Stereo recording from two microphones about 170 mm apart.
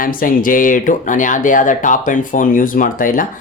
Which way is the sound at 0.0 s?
55° left (ahead or behind).